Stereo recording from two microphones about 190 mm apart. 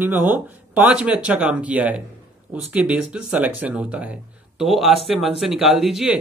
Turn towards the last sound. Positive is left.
turn(degrees=-5)  # may be behind; listen again after turning